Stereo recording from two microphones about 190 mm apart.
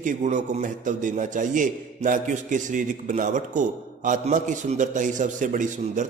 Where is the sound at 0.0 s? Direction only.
40° right (ahead or behind).